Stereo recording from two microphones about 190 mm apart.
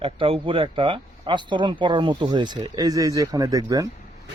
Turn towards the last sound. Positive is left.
turn(degrees=-20)  # may be behind; listen again after turning